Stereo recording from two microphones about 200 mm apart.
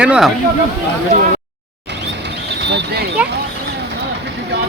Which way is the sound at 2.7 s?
60° right (ahead or behind).